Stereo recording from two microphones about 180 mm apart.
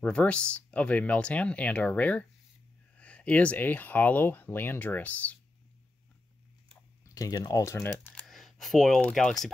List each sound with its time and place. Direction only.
0.0 s speech: 5° left (ahead or behind)
7.2 s speech: 20° left (ahead or behind)
8.3 s speech: centre (ahead or behind)